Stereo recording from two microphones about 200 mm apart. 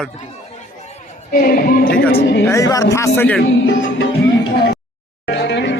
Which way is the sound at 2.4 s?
15° left (ahead or behind).